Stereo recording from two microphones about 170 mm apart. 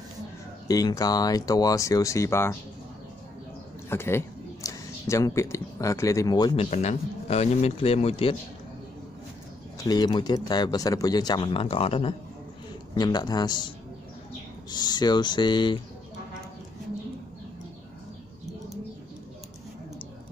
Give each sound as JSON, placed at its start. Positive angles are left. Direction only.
{"t": 0.7, "sound": "speech", "side_deg": 20}
{"t": 3.9, "sound": "speech", "side_deg": 15}
{"t": 9.8, "sound": "speech", "side_deg": 25}
{"t": 12.9, "sound": "speech", "side_deg": 25}
{"t": 14.7, "sound": "speech", "side_deg": 25}